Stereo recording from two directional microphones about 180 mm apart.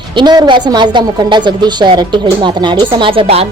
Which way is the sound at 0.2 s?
25° right (ahead or behind).